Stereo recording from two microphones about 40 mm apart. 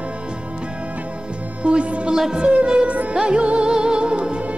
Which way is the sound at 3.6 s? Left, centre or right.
Centre.